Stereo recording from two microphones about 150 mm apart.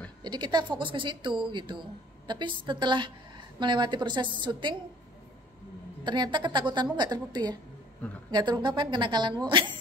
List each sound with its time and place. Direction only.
0.2 s speech: 30° right (ahead or behind)
6.0 s a woman's voice: 30° right (ahead or behind)